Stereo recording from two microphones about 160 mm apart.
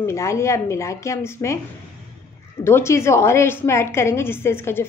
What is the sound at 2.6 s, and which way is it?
A woman's voice, 15° left (ahead or behind).